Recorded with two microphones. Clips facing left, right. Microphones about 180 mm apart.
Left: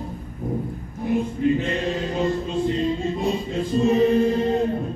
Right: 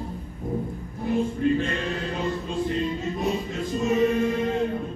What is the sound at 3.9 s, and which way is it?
Choir, 35° left (ahead or behind).